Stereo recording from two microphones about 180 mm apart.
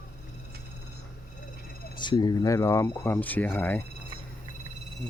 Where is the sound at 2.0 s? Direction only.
25° left (ahead or behind).